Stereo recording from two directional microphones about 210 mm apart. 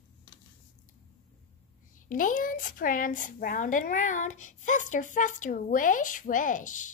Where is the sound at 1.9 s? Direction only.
40° left (ahead or behind).